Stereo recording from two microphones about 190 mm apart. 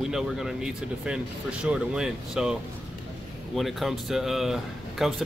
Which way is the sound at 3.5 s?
Centre (ahead or behind).